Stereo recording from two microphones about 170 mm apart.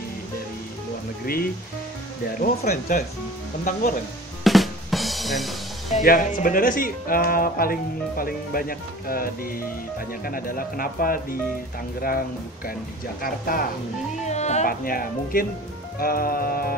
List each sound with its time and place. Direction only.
1.2 s speech: 60° left (ahead or behind)
2.4 s speech: 45° left (ahead or behind)
4.5 s drum kit: centre (ahead or behind)
6.0 s speech: 50° left (ahead or behind)
13.2 s speech: 60° left (ahead or behind)
14.2 s music: 40° left (ahead or behind)
14.7 s speech: 60° left (ahead or behind)